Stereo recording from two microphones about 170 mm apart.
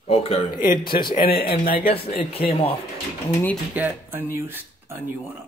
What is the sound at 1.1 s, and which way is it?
Speech, 65° left (ahead or behind).